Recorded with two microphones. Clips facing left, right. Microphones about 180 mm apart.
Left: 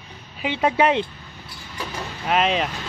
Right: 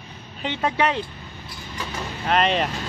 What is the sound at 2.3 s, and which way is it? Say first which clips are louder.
Speech: even; centre (ahead or behind).